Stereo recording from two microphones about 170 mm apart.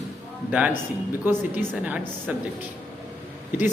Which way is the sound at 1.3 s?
10° right (ahead or behind).